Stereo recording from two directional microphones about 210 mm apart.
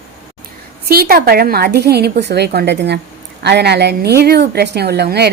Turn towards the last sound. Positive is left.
turn(degrees=-50)  # may be behind; listen again after turning